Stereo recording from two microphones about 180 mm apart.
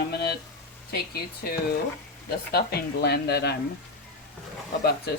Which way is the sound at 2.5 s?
60° left (ahead or behind).